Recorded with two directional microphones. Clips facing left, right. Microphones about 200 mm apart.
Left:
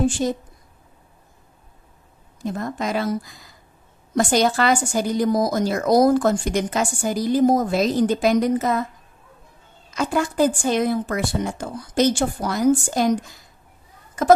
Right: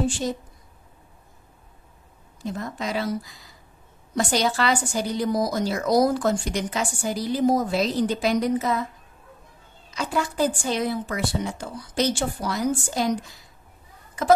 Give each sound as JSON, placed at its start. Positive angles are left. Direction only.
{"t": 2.4, "sound": "a woman's voice", "side_deg": 50}
{"t": 9.8, "sound": "a woman's voice", "side_deg": 50}